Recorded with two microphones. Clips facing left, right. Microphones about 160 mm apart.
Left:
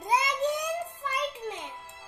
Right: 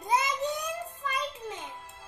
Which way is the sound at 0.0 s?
15° left (ahead or behind).